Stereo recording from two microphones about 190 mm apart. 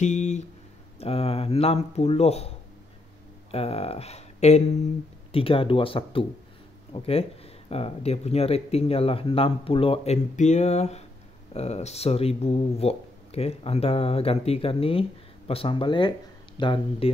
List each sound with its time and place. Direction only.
0.0 s speech: 40° left (ahead or behind)
3.5 s speech: 30° left (ahead or behind)